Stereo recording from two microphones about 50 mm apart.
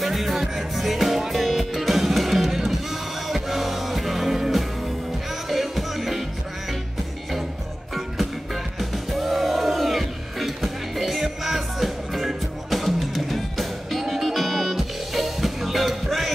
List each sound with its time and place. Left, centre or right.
0.0 s music: centre
8.7 s music: centre